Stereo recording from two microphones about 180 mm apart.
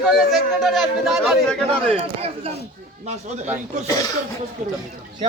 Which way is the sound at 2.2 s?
35° right (ahead or behind).